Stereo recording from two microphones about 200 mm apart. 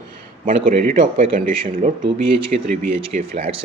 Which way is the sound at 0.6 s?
45° right (ahead or behind).